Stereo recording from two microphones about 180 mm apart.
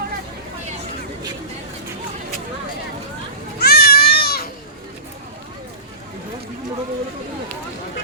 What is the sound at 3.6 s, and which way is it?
Goat, 60° left (ahead or behind).